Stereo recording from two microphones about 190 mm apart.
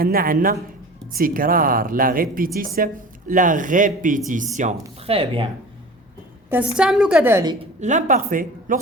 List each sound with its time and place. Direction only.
0.0 s speech: 50° right (ahead or behind); by 5.5 s 30° right (ahead or behind)
6.7 s a woman's voice: 5° right (ahead or behind)
7.4 s speech: 35° right (ahead or behind)